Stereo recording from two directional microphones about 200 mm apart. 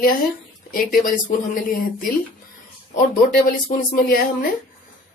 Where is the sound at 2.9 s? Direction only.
45° left (ahead or behind).